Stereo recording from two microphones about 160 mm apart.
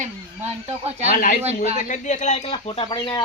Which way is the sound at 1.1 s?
60° left (ahead or behind).